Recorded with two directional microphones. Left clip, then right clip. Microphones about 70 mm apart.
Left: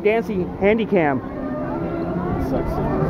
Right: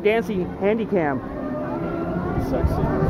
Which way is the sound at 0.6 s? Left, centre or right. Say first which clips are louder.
Left 4 dB; left.